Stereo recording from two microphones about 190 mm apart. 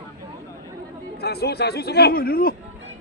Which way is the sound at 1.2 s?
60° left (ahead or behind).